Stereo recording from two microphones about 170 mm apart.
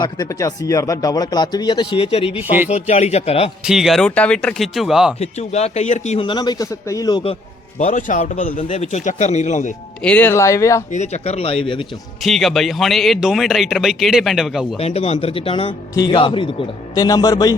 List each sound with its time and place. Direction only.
0.0 s speech: 20° left (ahead or behind); by 3.5 s 35° left (ahead or behind)
3.6 s speech: 5° right (ahead or behind)
5.2 s speech: 40° left (ahead or behind)
6.2 s speech: 25° left (ahead or behind)
7.8 s a man's voice: 45° left (ahead or behind)
10.0 s speech: 10° left (ahead or behind)
10.9 s speech: 40° left (ahead or behind)
12.2 s speech: centre (ahead or behind)
14.8 s speech: 40° left (ahead or behind); by 17.5 s 20° left (ahead or behind)